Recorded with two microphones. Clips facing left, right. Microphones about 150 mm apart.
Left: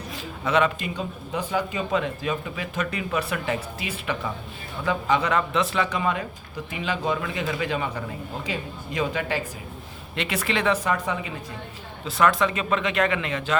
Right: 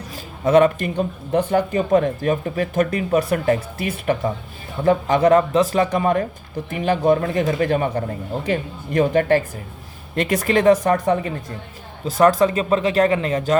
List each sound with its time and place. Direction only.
0.4 s a man's voice: 45° right (ahead or behind)